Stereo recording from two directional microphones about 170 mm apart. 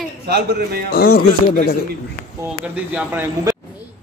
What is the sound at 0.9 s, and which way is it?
Speech, 60° left (ahead or behind).